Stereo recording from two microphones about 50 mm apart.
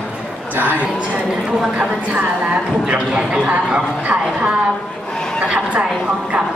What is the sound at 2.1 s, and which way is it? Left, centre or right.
Speech, right.